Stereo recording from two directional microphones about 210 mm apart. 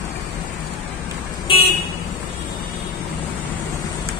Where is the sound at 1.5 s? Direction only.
25° left (ahead or behind).